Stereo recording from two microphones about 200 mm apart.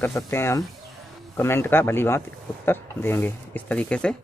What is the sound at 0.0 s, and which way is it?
Speech, 10° left (ahead or behind).